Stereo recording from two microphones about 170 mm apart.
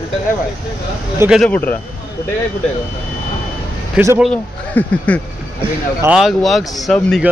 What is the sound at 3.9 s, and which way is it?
Speech, 10° right (ahead or behind).